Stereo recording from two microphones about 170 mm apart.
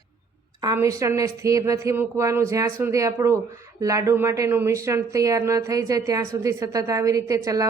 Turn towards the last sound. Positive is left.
turn(degrees=-20)  # may be behind; listen again after turning